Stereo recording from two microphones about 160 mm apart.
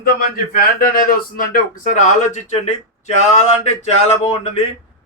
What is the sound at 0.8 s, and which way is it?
Speech, 65° left (ahead or behind).